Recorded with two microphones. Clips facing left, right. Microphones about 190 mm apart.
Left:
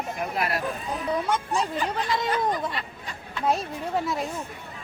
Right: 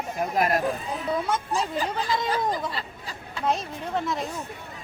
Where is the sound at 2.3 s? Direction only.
30° right (ahead or behind).